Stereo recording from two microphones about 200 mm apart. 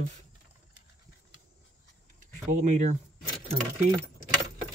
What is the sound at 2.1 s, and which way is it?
Speech, 35° right (ahead or behind).